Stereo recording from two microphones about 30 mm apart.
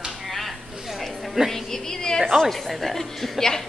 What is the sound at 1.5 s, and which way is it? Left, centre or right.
Speech, centre.